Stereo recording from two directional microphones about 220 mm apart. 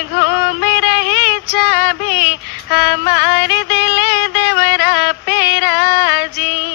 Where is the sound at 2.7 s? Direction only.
50° left (ahead or behind).